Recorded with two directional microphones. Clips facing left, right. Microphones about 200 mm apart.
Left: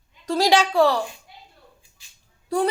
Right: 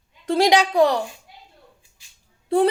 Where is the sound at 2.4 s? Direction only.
25° right (ahead or behind).